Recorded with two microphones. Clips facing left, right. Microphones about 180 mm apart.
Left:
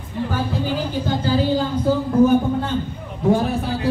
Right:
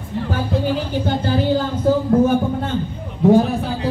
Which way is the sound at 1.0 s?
60° right (ahead or behind).